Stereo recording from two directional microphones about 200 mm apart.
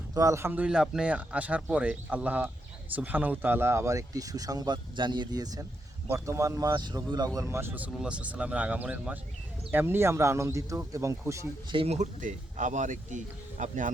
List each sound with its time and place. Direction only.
0.1 s speech: 15° right (ahead or behind)
11.8 s speech: 35° right (ahead or behind)